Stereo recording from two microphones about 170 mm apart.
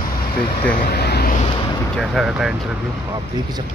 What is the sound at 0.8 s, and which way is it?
Vehicle, 70° left (ahead or behind).